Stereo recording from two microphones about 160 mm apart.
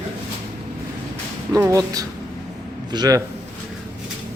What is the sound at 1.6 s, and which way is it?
A man's voice, 20° right (ahead or behind).